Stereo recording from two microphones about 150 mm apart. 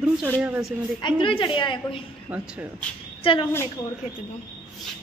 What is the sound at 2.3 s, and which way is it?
Speech, 10° right (ahead or behind).